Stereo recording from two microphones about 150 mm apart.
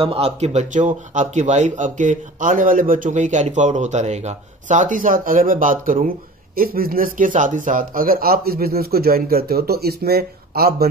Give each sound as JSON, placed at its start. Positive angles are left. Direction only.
{"t": 0.0, "sound": "speech", "side_deg": -40}